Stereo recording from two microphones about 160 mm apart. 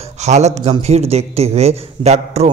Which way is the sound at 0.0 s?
45° right (ahead or behind).